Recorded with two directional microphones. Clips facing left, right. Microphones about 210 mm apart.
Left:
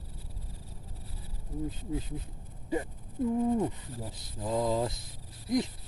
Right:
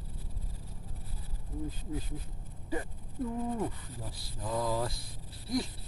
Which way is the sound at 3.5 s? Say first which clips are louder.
Left 5 dB; 20° left (ahead or behind).